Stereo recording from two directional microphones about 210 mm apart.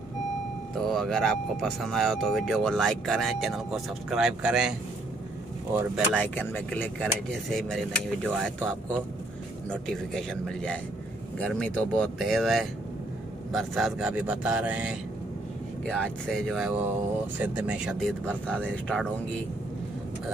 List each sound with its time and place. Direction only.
0.7 s speech: centre (ahead or behind)
5.9 s speech: 5° left (ahead or behind)
9.7 s speech: 5° left (ahead or behind)